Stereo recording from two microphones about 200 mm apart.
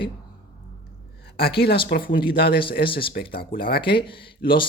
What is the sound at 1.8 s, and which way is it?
Speech, 50° left (ahead or behind).